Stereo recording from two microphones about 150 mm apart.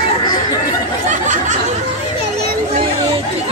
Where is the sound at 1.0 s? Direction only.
55° right (ahead or behind).